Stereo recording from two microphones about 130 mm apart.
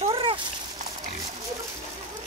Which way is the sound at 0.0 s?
45° right (ahead or behind).